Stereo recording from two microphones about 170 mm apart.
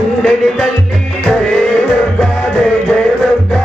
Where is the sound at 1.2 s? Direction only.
Centre (ahead or behind).